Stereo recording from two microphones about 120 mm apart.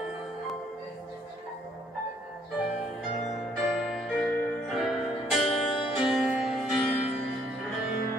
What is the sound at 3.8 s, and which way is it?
Music, 5° left (ahead or behind).